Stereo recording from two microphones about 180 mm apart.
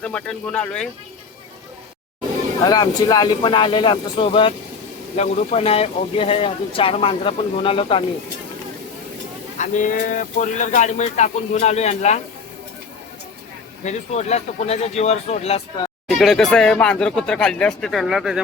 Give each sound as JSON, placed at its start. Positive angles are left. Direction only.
{"t": 0.0, "sound": "speech", "side_deg": 10}
{"t": 2.6, "sound": "speech", "side_deg": 20}
{"t": 9.6, "sound": "speech", "side_deg": 45}
{"t": 13.8, "sound": "speech", "side_deg": 40}
{"t": 16.1, "sound": "speech", "side_deg": 0}